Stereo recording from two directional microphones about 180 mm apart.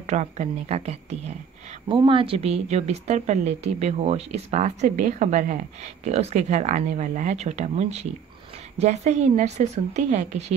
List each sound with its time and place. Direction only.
0.0 s speech: 40° right (ahead or behind)